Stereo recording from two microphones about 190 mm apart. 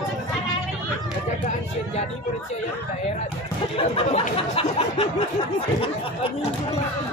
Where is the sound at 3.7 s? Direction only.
30° left (ahead or behind).